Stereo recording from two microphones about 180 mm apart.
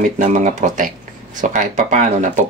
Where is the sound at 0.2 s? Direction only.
45° right (ahead or behind).